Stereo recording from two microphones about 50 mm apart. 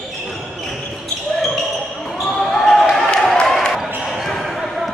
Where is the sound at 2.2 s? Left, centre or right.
Centre.